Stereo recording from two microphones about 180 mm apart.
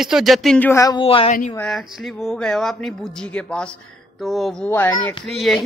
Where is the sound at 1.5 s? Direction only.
Centre (ahead or behind).